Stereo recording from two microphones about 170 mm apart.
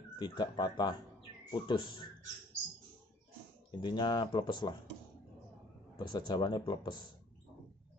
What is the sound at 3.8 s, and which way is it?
Speech, 25° left (ahead or behind).